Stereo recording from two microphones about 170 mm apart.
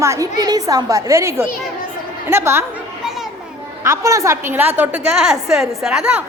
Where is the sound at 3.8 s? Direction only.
15° right (ahead or behind).